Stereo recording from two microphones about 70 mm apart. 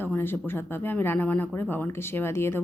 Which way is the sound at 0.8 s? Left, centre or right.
Left.